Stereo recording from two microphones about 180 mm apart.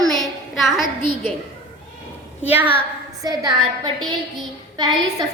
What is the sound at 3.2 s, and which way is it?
Speech, 20° right (ahead or behind).